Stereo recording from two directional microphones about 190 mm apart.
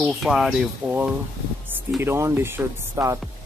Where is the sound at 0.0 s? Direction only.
Centre (ahead or behind).